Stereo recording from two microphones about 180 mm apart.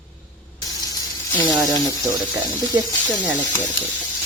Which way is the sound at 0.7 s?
20° left (ahead or behind).